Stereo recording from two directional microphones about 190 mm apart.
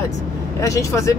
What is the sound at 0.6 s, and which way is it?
Speech, 15° left (ahead or behind).